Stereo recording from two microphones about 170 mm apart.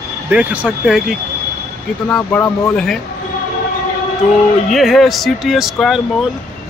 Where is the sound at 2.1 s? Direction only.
5° left (ahead or behind).